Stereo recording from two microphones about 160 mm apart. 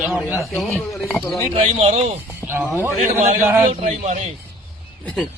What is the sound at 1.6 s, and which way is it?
Speech, 45° right (ahead or behind).